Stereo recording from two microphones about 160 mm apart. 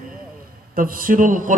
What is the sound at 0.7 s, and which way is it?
Speech, 60° right (ahead or behind).